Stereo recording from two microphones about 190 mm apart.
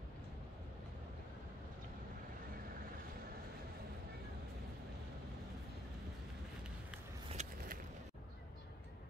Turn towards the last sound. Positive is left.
turn(degrees=-35)  # may be behind; listen again after turning